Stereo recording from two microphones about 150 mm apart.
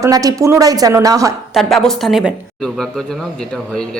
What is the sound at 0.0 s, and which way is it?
A woman's voice, 25° right (ahead or behind).